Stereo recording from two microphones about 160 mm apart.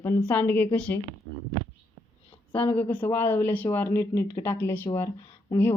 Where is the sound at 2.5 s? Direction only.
35° left (ahead or behind).